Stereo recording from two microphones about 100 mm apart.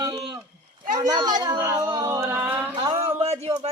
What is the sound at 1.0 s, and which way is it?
Speech, 45° right (ahead or behind).